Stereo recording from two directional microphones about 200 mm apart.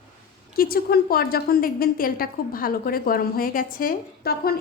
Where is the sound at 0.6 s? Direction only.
45° left (ahead or behind).